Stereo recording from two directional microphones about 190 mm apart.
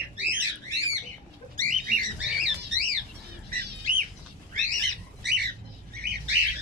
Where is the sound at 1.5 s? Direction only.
45° right (ahead or behind).